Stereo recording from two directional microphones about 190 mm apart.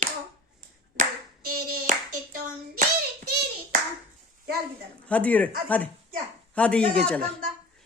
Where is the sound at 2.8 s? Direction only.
60° right (ahead or behind).